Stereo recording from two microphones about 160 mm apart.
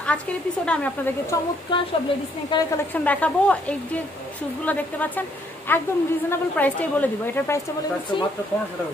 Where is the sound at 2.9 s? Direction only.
10° left (ahead or behind).